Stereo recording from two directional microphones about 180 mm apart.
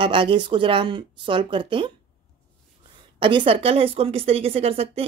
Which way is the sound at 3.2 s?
30° right (ahead or behind).